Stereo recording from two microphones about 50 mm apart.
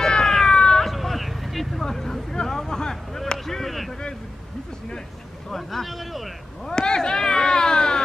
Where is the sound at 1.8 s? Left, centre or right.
Centre.